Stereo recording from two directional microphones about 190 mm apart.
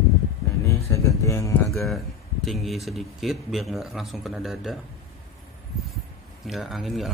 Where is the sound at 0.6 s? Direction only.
15° left (ahead or behind).